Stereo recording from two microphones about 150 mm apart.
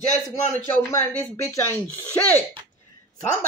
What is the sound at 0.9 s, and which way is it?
Speech, 15° left (ahead or behind).